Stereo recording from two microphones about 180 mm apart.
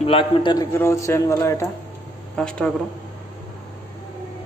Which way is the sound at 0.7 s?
15° left (ahead or behind).